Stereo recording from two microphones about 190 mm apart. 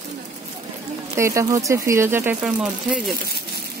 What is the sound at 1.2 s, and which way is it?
Speech, 15° right (ahead or behind).